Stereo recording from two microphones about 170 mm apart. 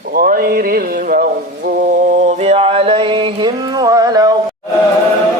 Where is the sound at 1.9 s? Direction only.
45° right (ahead or behind); by 4.4 s 20° right (ahead or behind).